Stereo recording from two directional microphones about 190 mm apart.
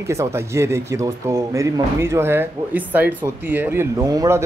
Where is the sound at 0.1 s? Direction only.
15° right (ahead or behind).